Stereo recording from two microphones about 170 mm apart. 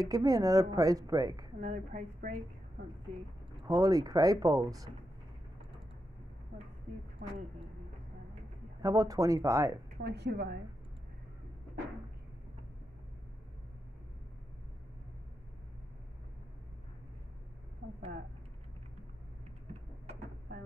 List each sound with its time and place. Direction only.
0.0 s a woman's voice: 20° right (ahead or behind)
1.6 s a woman's voice: 45° right (ahead or behind)
3.6 s a woman's voice: 20° right (ahead or behind)
8.8 s a woman's voice: 20° right (ahead or behind)
10.0 s a woman's voice: 80° right
19.7 s a sound: 40° right (ahead or behind)